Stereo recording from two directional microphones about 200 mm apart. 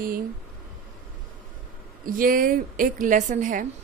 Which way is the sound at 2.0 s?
45° right (ahead or behind).